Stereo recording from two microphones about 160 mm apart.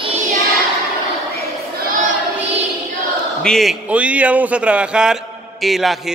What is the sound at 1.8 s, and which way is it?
Choir, 60° right (ahead or behind).